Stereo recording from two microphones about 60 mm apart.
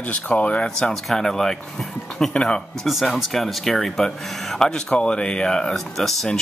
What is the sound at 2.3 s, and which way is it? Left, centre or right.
Speech, centre.